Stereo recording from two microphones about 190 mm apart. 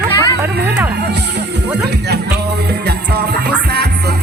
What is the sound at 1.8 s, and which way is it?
Music, 60° right (ahead or behind).